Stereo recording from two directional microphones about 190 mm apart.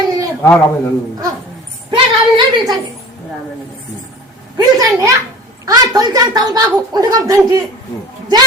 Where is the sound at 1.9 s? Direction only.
25° right (ahead or behind).